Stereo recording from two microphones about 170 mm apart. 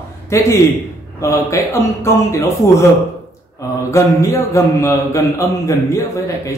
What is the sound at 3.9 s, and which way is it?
A man's voice, 15° left (ahead or behind).